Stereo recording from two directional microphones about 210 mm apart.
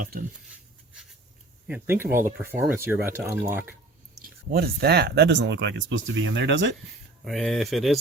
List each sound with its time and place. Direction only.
1.6 s speech: 10° right (ahead or behind)
4.2 s speech: 45° right (ahead or behind)
7.3 s speech: centre (ahead or behind)